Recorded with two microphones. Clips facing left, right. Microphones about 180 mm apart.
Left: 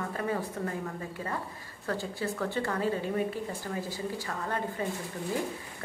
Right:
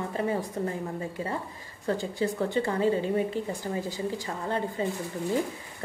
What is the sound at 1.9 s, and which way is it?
A woman's voice, 15° right (ahead or behind).